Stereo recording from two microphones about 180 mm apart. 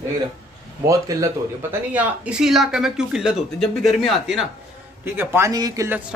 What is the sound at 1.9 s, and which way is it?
Speech, 5° right (ahead or behind).